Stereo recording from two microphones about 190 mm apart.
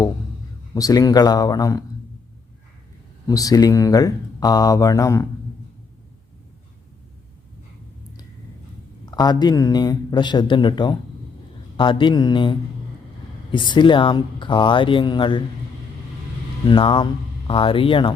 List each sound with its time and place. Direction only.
0.7 s speech: 20° left (ahead or behind)
3.2 s speech: 20° left (ahead or behind)
9.0 s speech: 20° left (ahead or behind)
16.6 s speech: 25° left (ahead or behind)